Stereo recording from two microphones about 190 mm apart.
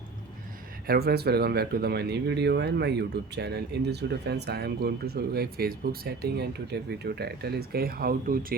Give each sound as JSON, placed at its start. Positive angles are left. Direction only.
{"t": 0.9, "sound": "speech", "side_deg": -55}